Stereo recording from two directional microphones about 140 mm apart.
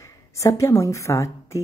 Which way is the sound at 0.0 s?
20° left (ahead or behind).